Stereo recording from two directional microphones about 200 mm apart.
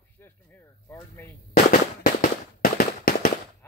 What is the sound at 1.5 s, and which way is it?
Firecracker, 45° left (ahead or behind).